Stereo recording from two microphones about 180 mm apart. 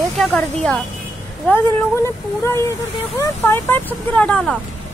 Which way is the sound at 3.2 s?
15° left (ahead or behind).